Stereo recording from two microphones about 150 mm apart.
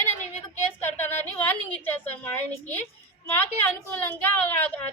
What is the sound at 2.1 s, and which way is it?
A woman's voice, 15° left (ahead or behind).